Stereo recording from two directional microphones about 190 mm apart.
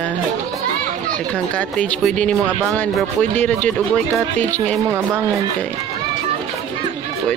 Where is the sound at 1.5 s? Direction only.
5° left (ahead or behind).